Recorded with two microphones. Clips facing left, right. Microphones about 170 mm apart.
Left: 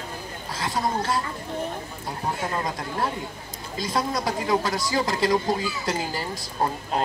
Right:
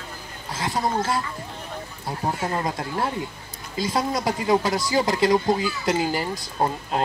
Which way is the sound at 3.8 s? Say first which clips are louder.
Right 2 dB; 25° right (ahead or behind).